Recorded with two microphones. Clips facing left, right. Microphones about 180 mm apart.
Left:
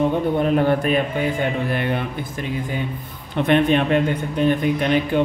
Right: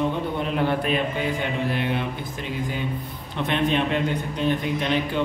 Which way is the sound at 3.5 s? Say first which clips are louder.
Left 6 dB; 55° left (ahead or behind).